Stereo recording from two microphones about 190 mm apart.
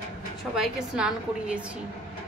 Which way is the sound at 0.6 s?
5° right (ahead or behind).